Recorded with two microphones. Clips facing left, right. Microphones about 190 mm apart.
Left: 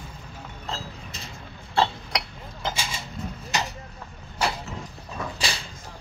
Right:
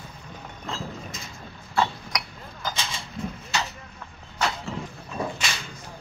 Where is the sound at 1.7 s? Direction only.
30° left (ahead or behind).